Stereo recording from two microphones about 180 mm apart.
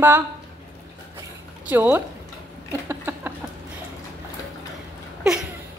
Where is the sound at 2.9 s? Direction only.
10° right (ahead or behind).